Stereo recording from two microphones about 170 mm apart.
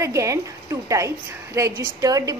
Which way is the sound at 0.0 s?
20° right (ahead or behind).